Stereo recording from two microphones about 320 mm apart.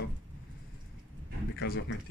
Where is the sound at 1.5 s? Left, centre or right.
Left.